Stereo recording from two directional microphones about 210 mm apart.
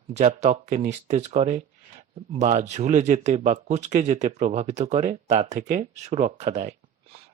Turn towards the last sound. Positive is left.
turn(degrees=-30)  # may be behind; listen again after turning